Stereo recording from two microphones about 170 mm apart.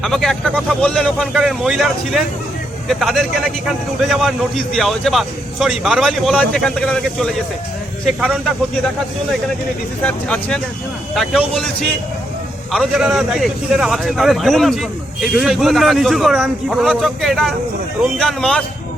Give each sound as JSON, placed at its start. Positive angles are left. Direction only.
{"t": 0.0, "sound": "a man's voice", "side_deg": 0}
{"t": 10.0, "sound": "a man's voice", "side_deg": 5}
{"t": 12.7, "sound": "a man's voice", "side_deg": 0}